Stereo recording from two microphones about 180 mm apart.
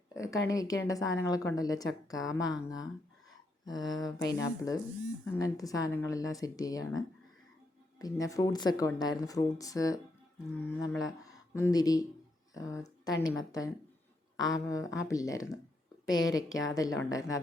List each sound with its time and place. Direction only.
0.1 s speech: 20° left (ahead or behind)
11.0 s speech: 20° left (ahead or behind)